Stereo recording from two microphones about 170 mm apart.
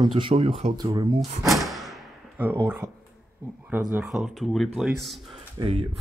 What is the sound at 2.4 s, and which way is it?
Speech, 10° right (ahead or behind).